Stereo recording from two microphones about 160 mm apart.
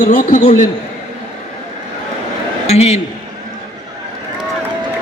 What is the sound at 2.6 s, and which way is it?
Speech, 40° left (ahead or behind).